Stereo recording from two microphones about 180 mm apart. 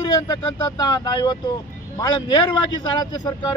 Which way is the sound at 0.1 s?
20° left (ahead or behind).